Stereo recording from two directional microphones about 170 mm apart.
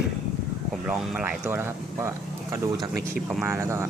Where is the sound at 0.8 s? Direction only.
5° right (ahead or behind).